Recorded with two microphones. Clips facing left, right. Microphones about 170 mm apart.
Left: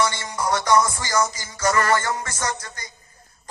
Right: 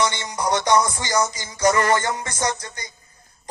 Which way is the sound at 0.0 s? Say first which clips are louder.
Right 1 dB; 20° right (ahead or behind).